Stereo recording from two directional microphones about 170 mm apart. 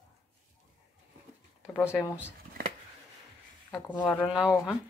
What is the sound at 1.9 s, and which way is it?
Speech, centre (ahead or behind).